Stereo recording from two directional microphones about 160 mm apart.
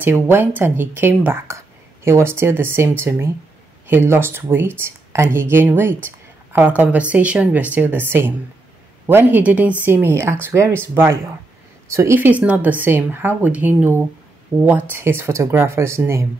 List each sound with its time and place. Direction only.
0.0 s speech: 10° right (ahead or behind)